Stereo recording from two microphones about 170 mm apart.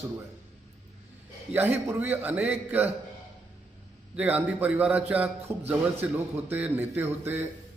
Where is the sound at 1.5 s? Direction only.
10° right (ahead or behind).